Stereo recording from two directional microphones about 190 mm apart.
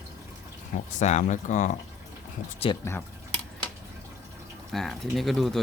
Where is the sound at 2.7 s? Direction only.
25° left (ahead or behind).